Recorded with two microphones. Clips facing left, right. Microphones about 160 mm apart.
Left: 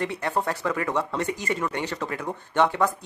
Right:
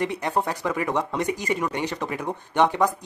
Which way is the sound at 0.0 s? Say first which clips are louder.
Right 2 dB; 15° right (ahead or behind).